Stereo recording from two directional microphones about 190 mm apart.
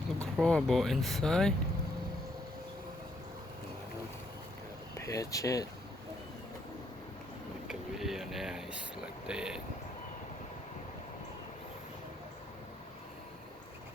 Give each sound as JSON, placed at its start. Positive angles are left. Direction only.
{"t": 0.3, "sound": "speech", "side_deg": 0}
{"t": 4.9, "sound": "speech", "side_deg": 15}
{"t": 7.7, "sound": "a sound", "side_deg": 0}